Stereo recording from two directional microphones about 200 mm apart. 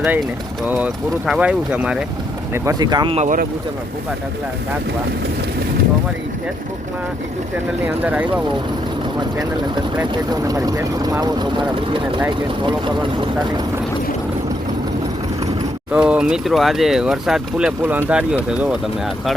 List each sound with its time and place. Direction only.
1.3 s speech: 5° right (ahead or behind)
2.5 s speech: 15° right (ahead or behind)
8.0 s speech: 5° right (ahead or behind)
10.0 s speech: 15° right (ahead or behind)
15.9 s speech: 5° right (ahead or behind)